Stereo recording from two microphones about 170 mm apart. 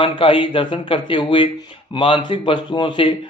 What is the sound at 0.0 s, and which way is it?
Speech, 30° left (ahead or behind).